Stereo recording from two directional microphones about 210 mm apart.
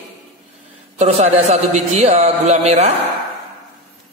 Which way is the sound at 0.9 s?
30° right (ahead or behind).